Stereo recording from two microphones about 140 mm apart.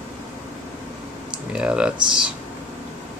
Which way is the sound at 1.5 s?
10° right (ahead or behind).